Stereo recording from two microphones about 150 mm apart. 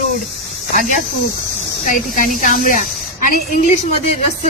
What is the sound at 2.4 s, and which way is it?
A woman's voice, 65° left (ahead or behind).